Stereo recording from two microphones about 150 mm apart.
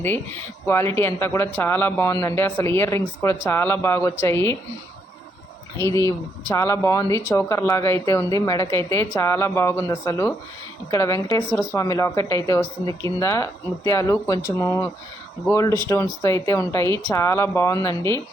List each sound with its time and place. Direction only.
0.7 s a man's voice: 15° left (ahead or behind)
5.7 s speech: 20° left (ahead or behind)